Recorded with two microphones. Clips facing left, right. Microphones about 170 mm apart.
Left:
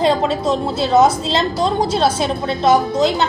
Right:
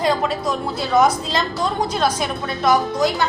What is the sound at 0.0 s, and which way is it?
A woman's voice, 25° left (ahead or behind).